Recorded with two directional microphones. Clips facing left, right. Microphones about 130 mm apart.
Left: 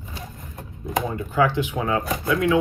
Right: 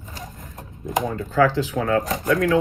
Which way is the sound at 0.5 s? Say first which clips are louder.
Right 1 dB; 15° right (ahead or behind).